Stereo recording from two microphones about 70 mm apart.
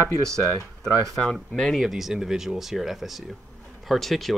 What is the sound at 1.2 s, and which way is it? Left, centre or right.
Speech, centre.